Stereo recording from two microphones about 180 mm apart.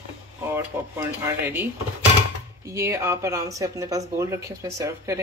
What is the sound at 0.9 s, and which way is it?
Speech, 15° right (ahead or behind).